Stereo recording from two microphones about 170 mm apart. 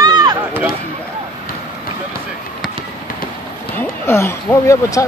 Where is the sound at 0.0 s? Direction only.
20° right (ahead or behind).